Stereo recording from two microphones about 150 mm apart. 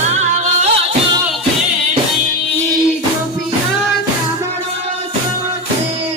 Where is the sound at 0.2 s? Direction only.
50° right (ahead or behind).